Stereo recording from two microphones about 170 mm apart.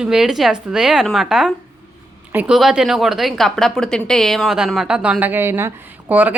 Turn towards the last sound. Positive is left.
turn(degrees=-10)  # may be behind; listen again after turning